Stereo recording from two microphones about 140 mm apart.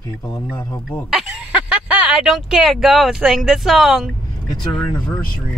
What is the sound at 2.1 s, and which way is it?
Speech, 5° right (ahead or behind).